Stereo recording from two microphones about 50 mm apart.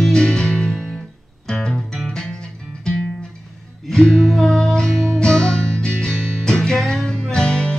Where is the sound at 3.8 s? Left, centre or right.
Centre.